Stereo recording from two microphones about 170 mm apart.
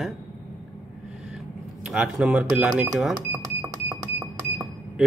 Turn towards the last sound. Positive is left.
turn(degrees=-20)  # may be behind; listen again after turning